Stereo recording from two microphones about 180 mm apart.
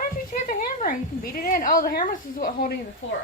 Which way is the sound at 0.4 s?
50° left (ahead or behind).